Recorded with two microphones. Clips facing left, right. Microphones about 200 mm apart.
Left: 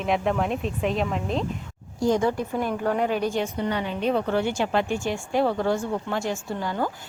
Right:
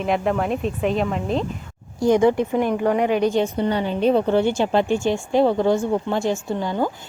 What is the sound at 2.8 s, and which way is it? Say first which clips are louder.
Speech: right 5 dB; 10° right (ahead or behind).